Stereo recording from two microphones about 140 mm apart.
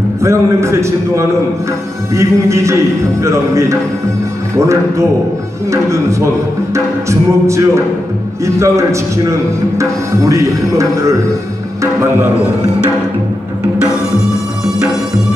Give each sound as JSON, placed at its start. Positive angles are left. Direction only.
{"t": 0.2, "sound": "speech", "side_deg": -20}